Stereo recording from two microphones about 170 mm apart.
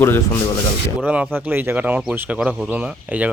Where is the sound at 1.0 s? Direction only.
5° right (ahead or behind).